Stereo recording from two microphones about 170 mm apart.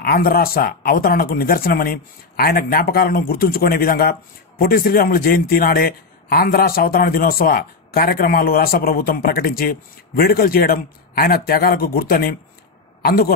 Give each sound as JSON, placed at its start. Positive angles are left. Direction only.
{"t": 0.0, "sound": "a man's voice", "side_deg": 60}